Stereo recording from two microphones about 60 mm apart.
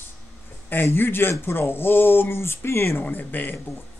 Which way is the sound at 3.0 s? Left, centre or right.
Left.